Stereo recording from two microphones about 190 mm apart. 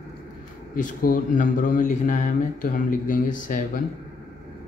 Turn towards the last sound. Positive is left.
turn(degrees=45)  # may be behind; listen again after turning